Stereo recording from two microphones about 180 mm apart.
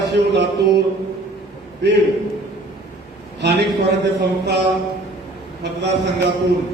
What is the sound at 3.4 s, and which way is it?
A man's voice, 75° right (ahead or behind).